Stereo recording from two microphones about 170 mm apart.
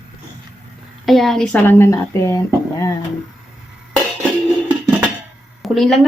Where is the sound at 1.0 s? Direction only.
Centre (ahead or behind); by 3.0 s 20° left (ahead or behind).